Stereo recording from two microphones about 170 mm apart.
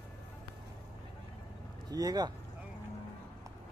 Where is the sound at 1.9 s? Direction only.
20° right (ahead or behind).